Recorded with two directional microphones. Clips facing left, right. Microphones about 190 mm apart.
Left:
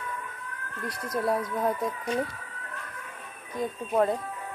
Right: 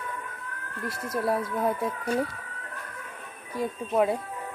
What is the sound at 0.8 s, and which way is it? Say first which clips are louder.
Speech: right 1 dB; 25° right (ahead or behind).